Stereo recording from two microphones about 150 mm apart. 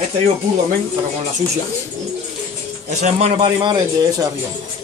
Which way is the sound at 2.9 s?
50° right (ahead or behind).